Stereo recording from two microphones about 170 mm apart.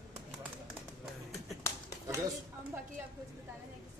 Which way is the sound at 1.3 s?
15° left (ahead or behind).